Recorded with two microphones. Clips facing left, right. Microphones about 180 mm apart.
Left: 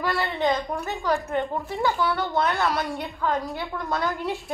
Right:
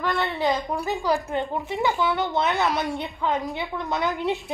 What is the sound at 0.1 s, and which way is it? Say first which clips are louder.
Speech: even; centre (ahead or behind).